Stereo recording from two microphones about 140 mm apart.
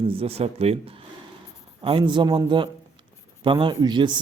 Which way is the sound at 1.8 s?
40° right (ahead or behind).